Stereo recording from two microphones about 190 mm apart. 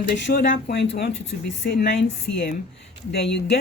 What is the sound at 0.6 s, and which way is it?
Speech, 65° left (ahead or behind).